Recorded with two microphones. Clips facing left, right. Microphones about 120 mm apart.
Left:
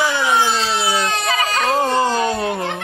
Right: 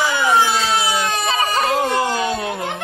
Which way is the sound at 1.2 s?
30° right (ahead or behind).